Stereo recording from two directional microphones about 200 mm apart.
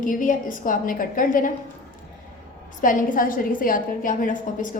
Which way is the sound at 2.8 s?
40° left (ahead or behind).